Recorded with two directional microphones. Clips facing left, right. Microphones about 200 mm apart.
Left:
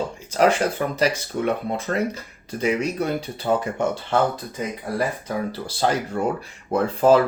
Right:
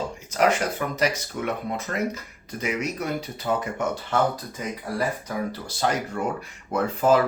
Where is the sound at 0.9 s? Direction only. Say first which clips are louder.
Left 3 dB; 30° left (ahead or behind).